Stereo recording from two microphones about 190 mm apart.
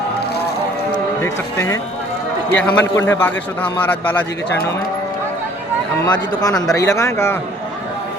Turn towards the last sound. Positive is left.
turn(degrees=15)  # may be behind; listen again after turning